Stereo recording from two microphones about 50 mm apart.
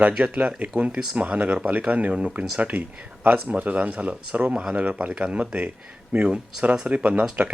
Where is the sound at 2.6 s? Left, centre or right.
Right.